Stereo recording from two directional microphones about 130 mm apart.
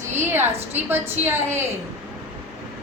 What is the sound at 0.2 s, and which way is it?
A woman's voice, 15° right (ahead or behind).